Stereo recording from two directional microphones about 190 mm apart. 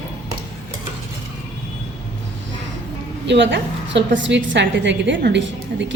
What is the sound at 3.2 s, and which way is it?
A woman's voice, 65° right (ahead or behind).